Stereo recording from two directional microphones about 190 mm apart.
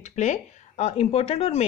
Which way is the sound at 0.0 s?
40° left (ahead or behind).